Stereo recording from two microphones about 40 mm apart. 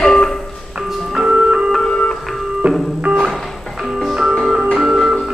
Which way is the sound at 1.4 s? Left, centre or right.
Right.